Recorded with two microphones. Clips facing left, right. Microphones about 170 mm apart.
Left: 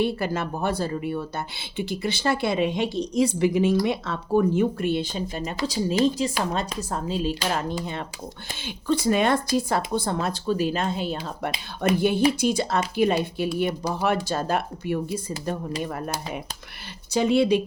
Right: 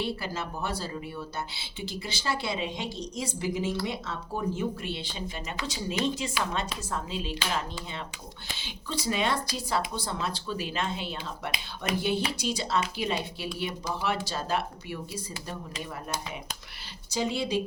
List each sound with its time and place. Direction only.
0.0 s speech: 55° left (ahead or behind)
17.2 s speech: 60° left (ahead or behind)